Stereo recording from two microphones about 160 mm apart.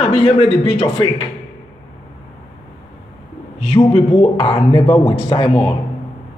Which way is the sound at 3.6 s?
40° left (ahead or behind).